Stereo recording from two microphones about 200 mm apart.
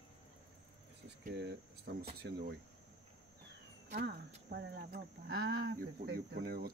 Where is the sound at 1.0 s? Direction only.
60° right (ahead or behind).